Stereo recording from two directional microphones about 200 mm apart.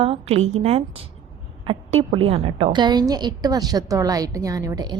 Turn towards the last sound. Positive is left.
turn(degrees=-20)  # may be behind; listen again after turning